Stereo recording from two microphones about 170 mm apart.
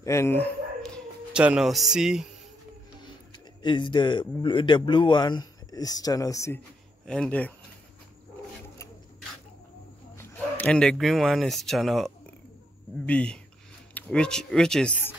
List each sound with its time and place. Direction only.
0.0 s dog: 15° left (ahead or behind)
1.3 s speech: 5° right (ahead or behind)
3.6 s a man's voice: 30° left (ahead or behind)
7.1 s speech: 5° left (ahead or behind)
10.1 s speech: 10° left (ahead or behind)